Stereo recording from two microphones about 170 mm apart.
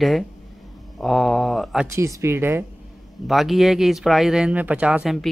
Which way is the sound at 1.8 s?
15° right (ahead or behind).